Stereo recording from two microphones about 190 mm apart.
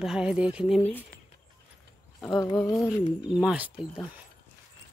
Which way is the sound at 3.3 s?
5° right (ahead or behind).